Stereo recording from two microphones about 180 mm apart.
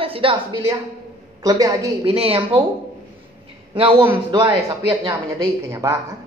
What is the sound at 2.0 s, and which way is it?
Speech, 30° right (ahead or behind).